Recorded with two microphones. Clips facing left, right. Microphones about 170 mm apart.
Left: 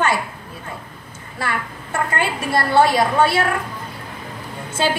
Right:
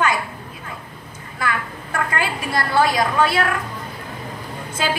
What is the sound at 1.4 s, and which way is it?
A woman's voice, 30° left (ahead or behind).